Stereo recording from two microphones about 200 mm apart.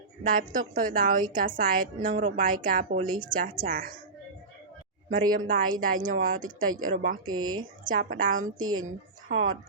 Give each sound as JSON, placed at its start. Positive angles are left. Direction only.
{"t": 0.3, "sound": "a woman's voice", "side_deg": -45}
{"t": 5.0, "sound": "a woman's voice", "side_deg": -45}
{"t": 7.3, "sound": "a woman's voice", "side_deg": -90}
{"t": 7.9, "sound": "a woman's voice", "side_deg": -45}
{"t": 8.4, "sound": "a woman's voice", "side_deg": -90}